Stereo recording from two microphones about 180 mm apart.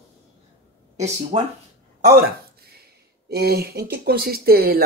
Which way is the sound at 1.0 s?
40° right (ahead or behind).